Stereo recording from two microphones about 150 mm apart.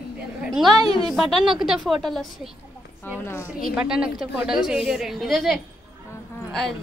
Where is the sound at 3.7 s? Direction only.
5° right (ahead or behind).